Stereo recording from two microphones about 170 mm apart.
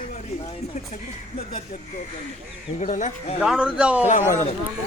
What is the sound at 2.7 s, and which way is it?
Speech, 45° left (ahead or behind).